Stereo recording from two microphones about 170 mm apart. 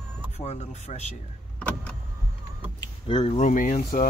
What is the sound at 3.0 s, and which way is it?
Speech, 30° left (ahead or behind).